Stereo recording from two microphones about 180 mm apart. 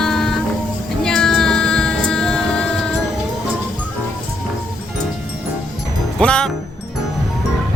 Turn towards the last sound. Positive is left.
turn(degrees=5)  # may be behind; listen again after turning